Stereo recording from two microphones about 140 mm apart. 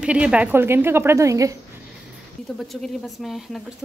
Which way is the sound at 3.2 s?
Centre (ahead or behind).